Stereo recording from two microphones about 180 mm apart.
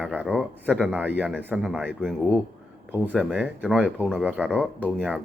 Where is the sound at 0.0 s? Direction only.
5° right (ahead or behind).